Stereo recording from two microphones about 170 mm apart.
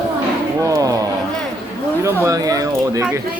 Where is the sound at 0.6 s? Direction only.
20° right (ahead or behind).